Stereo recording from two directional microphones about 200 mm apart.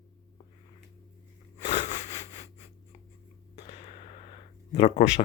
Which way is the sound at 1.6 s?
35° left (ahead or behind).